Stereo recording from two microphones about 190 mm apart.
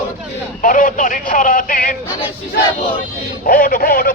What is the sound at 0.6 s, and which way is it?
Speech, 45° left (ahead or behind).